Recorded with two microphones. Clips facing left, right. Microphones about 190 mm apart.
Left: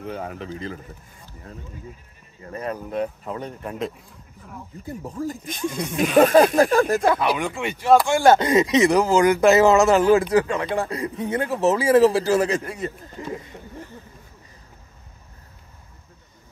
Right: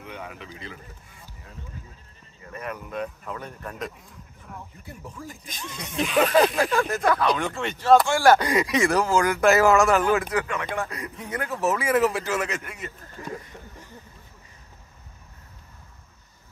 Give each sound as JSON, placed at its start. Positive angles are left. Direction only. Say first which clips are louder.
{"t": 0.0, "sound": "speech", "louder": "left 7 dB", "side_deg": 40}
{"t": 2.4, "sound": "speech", "louder": "left 5 dB", "side_deg": 30}
{"t": 4.8, "sound": "speech", "louder": "left 13 dB", "side_deg": 40}
{"t": 5.5, "sound": "speech", "louder": "left 11 dB", "side_deg": 55}
{"t": 7.0, "sound": "speech", "louder": "left 3 dB", "side_deg": 25}
{"t": 7.2, "sound": "speech", "louder": "left 1 dB", "side_deg": 10}
{"t": 8.1, "sound": "speech", "louder": "left 3 dB", "side_deg": 20}
{"t": 13.0, "sound": "speech", "louder": "left 4 dB", "side_deg": 20}